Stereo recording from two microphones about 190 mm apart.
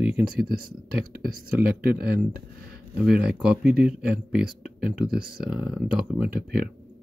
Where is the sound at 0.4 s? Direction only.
50° right (ahead or behind).